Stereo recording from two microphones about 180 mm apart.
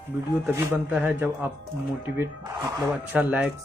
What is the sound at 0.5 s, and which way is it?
Speech, 15° right (ahead or behind).